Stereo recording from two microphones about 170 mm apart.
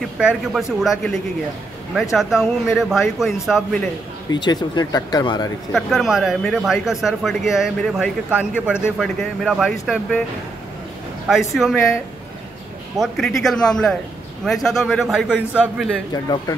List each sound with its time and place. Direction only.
0.2 s a man's voice: 5° right (ahead or behind)
4.3 s speech: 25° left (ahead or behind)
5.7 s a man's voice: centre (ahead or behind)
11.2 s a man's voice: centre (ahead or behind)
13.0 s a man's voice: centre (ahead or behind)
16.1 s speech: 20° left (ahead or behind)